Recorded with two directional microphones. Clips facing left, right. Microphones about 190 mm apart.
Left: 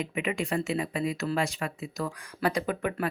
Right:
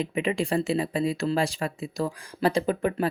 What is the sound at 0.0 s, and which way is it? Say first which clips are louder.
Speech: right 4 dB; 30° right (ahead or behind).